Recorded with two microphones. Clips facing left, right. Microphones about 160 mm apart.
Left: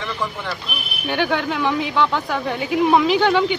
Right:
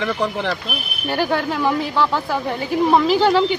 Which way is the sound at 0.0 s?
70° right (ahead or behind).